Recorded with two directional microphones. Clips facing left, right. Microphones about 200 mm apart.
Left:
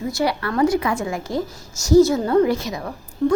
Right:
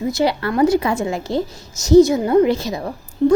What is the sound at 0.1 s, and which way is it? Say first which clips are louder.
A woman's voice: right 3 dB; 25° right (ahead or behind).